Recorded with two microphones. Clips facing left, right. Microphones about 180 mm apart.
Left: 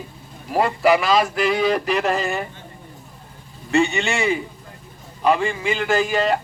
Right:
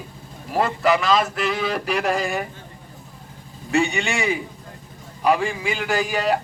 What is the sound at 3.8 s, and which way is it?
A man's voice, 15° right (ahead or behind).